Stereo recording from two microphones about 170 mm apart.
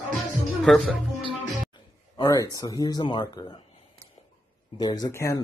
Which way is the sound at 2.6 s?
20° left (ahead or behind).